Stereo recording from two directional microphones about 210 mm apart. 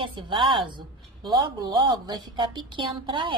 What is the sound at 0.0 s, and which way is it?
A woman's voice, 25° right (ahead or behind).